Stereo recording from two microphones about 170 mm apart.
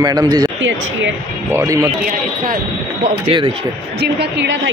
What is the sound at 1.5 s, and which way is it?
Speech, 15° right (ahead or behind).